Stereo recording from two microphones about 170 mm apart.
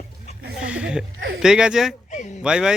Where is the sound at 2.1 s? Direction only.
45° left (ahead or behind).